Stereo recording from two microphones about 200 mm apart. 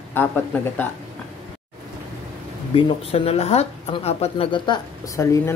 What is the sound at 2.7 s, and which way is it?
Speech, 30° left (ahead or behind).